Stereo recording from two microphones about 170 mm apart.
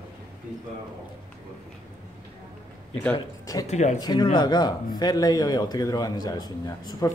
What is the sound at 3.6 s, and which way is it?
Speech, 40° left (ahead or behind).